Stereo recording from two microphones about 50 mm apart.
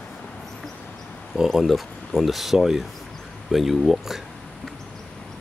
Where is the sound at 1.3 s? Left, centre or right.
Centre.